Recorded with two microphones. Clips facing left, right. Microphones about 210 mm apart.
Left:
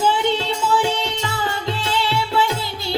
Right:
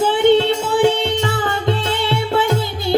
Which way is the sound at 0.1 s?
55° right (ahead or behind).